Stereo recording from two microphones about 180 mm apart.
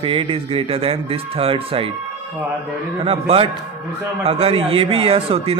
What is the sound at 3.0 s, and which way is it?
Speech, 30° right (ahead or behind).